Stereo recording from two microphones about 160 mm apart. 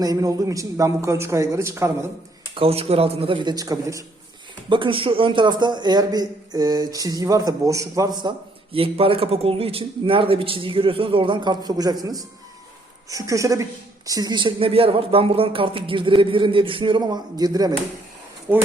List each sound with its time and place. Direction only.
0.0 s a man's voice: 20° right (ahead or behind)
2.6 s speech: 40° right (ahead or behind); by 4.0 s 20° right (ahead or behind)
4.7 s a man's voice: 30° right (ahead or behind)
8.7 s a man's voice: 35° right (ahead or behind)